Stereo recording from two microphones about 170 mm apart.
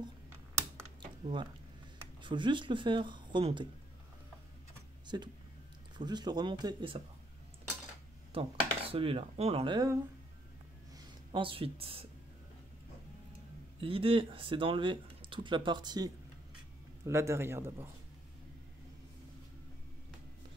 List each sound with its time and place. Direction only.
1.2 s speech: 25° right (ahead or behind)
5.0 s a sound: 25° right (ahead or behind)
5.9 s speech: 25° right (ahead or behind)
8.3 s speech: 35° right (ahead or behind)
11.3 s speech: 30° right (ahead or behind)
13.7 s speech: 35° right (ahead or behind); by 17.9 s 15° right (ahead or behind)